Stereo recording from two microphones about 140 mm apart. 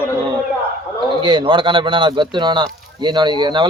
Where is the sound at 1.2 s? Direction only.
35° right (ahead or behind).